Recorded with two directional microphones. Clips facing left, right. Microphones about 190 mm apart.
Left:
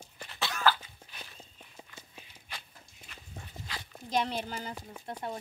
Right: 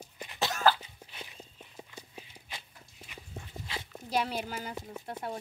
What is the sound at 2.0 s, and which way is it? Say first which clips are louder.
Horse: right 5 dB; 20° right (ahead or behind).